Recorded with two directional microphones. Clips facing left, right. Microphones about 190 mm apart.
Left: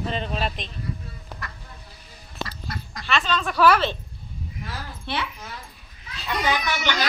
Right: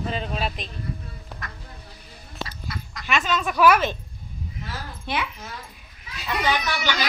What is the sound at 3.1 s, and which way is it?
Speech, 10° right (ahead or behind).